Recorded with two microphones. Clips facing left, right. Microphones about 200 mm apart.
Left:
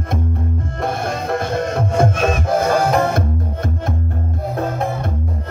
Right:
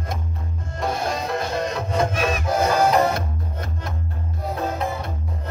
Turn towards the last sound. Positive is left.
turn(degrees=50)  # may be behind; listen again after turning